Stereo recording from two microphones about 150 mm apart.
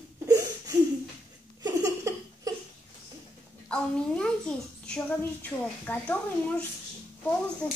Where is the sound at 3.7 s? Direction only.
5° left (ahead or behind).